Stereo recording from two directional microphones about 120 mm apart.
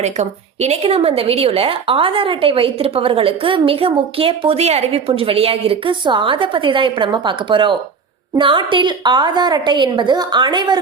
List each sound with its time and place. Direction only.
0.0 s a woman's voice: 65° right (ahead or behind); by 10.8 s 40° right (ahead or behind)